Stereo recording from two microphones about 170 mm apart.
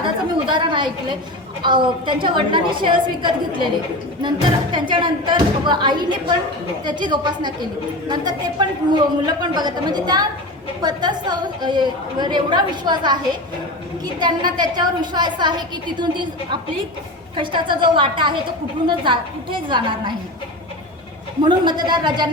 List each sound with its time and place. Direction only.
0.4 s a woman's voice: 30° right (ahead or behind)
4.7 s a woman's voice: 25° right (ahead or behind)
21.4 s a woman's voice: 25° right (ahead or behind)